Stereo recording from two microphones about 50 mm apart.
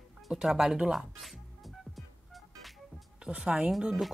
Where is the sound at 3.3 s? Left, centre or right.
Right.